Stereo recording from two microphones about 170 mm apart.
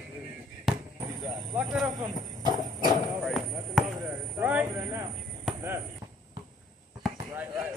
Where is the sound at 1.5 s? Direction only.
5° right (ahead or behind).